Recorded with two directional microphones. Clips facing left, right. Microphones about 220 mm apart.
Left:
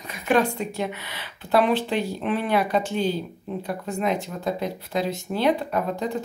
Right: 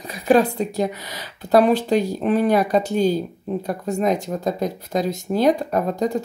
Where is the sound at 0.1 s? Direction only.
35° right (ahead or behind).